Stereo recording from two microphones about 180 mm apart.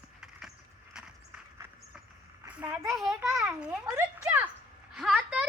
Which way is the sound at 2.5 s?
10° right (ahead or behind).